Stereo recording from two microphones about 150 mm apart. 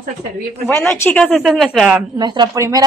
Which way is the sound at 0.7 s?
10° left (ahead or behind).